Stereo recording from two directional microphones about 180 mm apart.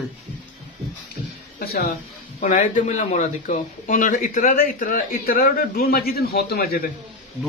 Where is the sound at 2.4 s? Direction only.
45° left (ahead or behind).